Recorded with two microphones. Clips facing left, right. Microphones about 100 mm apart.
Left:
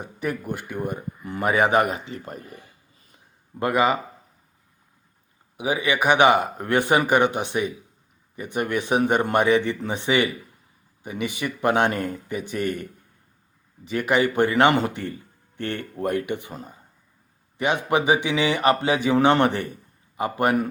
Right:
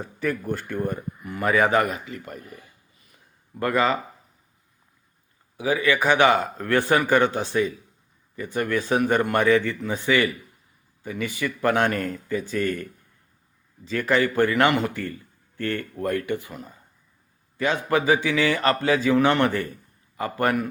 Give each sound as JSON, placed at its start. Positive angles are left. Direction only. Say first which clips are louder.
{"t": 0.0, "sound": "speech", "louder": "right 1 dB", "side_deg": 15}
{"t": 1.2, "sound": "a man's voice", "louder": "even", "side_deg": 25}
{"t": 3.0, "sound": "a sound", "louder": "left 1 dB", "side_deg": 30}
{"t": 3.7, "sound": "speech", "louder": "left 1 dB", "side_deg": 15}
{"t": 5.5, "sound": "a man's voice", "louder": "right 1 dB", "side_deg": 20}
{"t": 16.5, "sound": "speech", "louder": "left 1 dB", "side_deg": 30}
{"t": 17.6, "sound": "a man's voice", "louder": "left 1 dB", "side_deg": 20}